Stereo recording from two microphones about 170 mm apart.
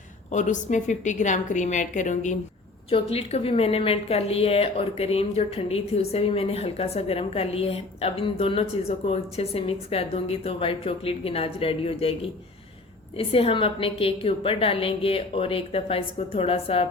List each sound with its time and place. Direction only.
0.3 s a woman's voice: 45° left (ahead or behind)
2.9 s a woman's voice: 35° left (ahead or behind)